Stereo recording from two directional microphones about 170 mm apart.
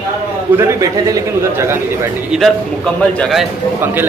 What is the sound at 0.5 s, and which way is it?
Speech, 15° right (ahead or behind).